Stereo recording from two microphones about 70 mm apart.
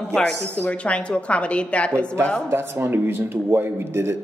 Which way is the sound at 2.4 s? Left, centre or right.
Right.